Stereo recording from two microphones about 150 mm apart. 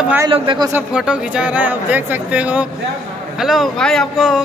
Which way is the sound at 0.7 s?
5° right (ahead or behind).